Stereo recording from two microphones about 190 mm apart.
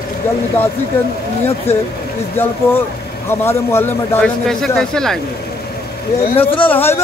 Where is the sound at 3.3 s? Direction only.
15° left (ahead or behind).